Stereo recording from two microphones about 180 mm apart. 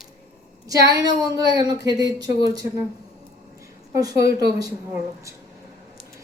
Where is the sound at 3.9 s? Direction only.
20° right (ahead or behind).